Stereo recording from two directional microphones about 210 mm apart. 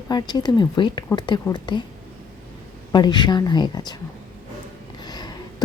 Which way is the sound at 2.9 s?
20° left (ahead or behind).